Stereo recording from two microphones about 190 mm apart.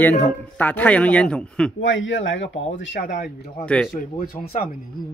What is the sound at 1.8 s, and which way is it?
Speech, 80° left.